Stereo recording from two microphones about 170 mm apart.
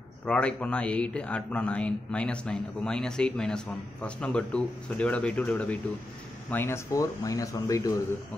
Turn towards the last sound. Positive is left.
turn(degrees=20)  # may be behind; listen again after turning